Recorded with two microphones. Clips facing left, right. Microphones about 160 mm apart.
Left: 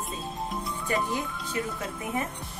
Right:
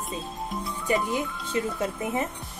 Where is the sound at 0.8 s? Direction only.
20° right (ahead or behind).